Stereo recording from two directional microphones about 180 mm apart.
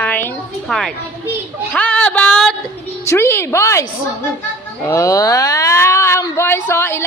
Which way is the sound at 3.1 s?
15° left (ahead or behind).